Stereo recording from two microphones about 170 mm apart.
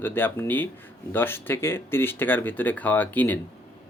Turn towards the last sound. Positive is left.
turn(degrees=10)  # may be behind; listen again after turning